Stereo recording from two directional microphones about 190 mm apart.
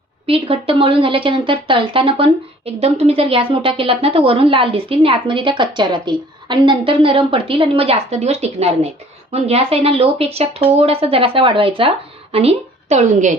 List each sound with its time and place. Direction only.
0.3 s a woman's voice: 30° right (ahead or behind)